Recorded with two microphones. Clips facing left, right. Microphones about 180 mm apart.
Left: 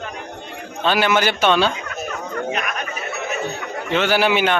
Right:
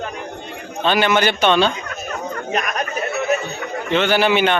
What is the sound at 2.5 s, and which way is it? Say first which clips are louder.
Chatter: right 3 dB; 40° right (ahead or behind).